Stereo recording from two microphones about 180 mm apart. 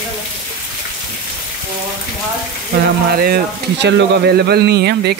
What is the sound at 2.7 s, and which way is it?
Speech, 65° right (ahead or behind).